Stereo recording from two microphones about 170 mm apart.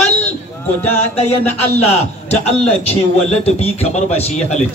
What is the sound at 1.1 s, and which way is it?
A man's voice, 40° left (ahead or behind).